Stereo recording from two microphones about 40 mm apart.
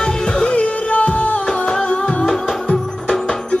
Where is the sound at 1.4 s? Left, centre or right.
Centre.